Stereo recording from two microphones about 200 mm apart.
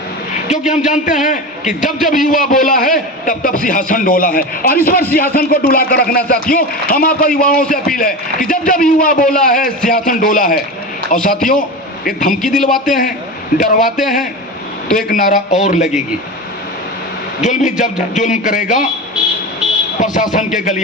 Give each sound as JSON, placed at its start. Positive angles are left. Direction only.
{"t": 0.4, "sound": "a man's voice", "side_deg": 35}
{"t": 12.4, "sound": "speech", "side_deg": 0}
{"t": 12.8, "sound": "a man's voice", "side_deg": 40}
{"t": 17.4, "sound": "a man's voice", "side_deg": 40}
{"t": 20.0, "sound": "a man's voice", "side_deg": 40}